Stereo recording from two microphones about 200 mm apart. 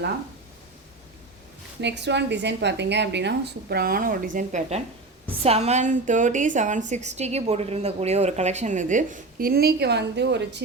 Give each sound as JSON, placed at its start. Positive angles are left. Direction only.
{"t": 1.8, "sound": "a woman's voice", "side_deg": -60}